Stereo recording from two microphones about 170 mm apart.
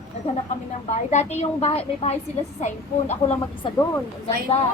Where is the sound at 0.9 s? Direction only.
45° left (ahead or behind).